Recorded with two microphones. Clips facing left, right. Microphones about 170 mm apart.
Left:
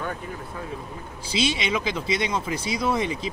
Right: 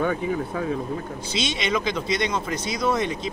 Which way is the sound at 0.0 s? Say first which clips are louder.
Right 9 dB; 70° right (ahead or behind).